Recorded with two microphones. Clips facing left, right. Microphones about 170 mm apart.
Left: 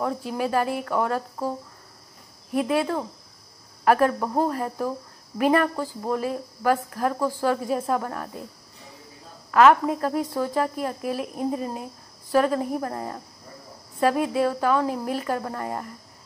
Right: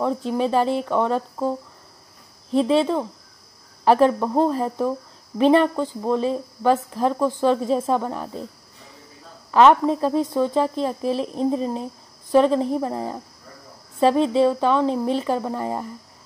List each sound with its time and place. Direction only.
0.0 s a woman's voice: 20° right (ahead or behind)
2.5 s a woman's voice: 25° right (ahead or behind)
9.5 s a woman's voice: 30° right (ahead or behind)
14.2 s a woman's voice: 25° right (ahead or behind)